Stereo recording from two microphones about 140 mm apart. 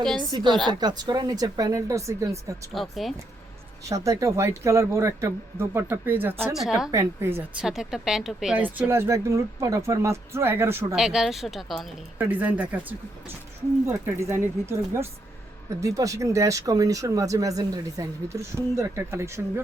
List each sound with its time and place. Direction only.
0.3 s speech: 30° right (ahead or behind)
2.7 s speech: centre (ahead or behind)
3.8 s speech: 25° right (ahead or behind)
6.4 s speech: centre (ahead or behind)
6.9 s speech: 20° right (ahead or behind)
7.6 s speech: 5° right (ahead or behind)
10.9 s speech: 5° right (ahead or behind)
12.2 s speech: 10° right (ahead or behind)